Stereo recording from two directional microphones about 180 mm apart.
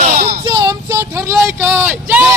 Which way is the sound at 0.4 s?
20° right (ahead or behind).